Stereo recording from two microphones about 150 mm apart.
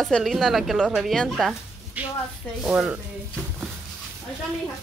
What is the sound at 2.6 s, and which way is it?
Speech, 5° right (ahead or behind).